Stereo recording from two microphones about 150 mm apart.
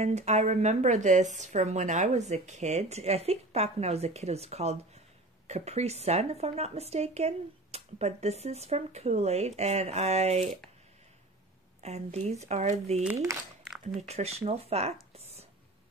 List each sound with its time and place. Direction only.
0.0 s speech: 45° right (ahead or behind)
11.8 s speech: 45° right (ahead or behind)